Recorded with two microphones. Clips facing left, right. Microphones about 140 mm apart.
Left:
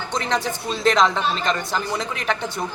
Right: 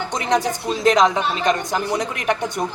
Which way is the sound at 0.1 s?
15° right (ahead or behind).